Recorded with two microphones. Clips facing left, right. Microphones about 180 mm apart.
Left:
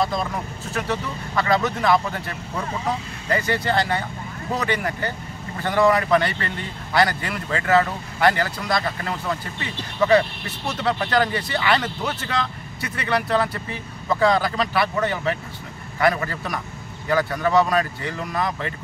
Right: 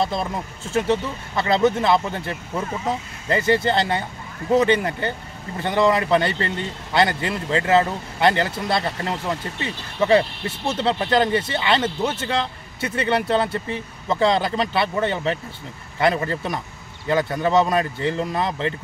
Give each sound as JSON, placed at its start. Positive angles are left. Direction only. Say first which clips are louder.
{"t": 0.0, "sound": "speech", "louder": "even", "side_deg": -25}